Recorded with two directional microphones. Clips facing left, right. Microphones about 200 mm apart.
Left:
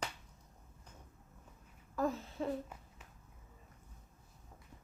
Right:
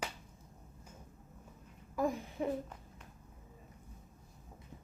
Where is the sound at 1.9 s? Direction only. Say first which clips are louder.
Right 1 dB; 15° right (ahead or behind).